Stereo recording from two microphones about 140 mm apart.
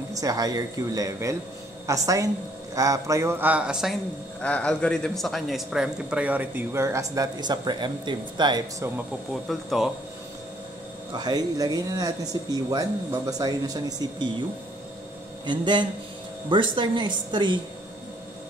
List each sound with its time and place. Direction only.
0.1 s a man's voice: 25° right (ahead or behind)
9.3 s speech: centre (ahead or behind)
11.1 s a man's voice: 30° right (ahead or behind)
15.4 s speech: 30° right (ahead or behind)